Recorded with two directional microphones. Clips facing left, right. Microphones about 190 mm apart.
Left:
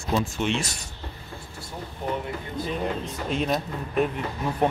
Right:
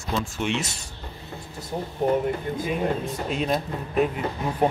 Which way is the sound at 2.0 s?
40° right (ahead or behind).